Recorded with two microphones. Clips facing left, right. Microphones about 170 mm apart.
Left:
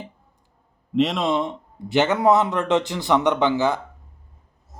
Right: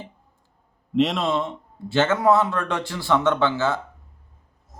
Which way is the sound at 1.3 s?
15° left (ahead or behind).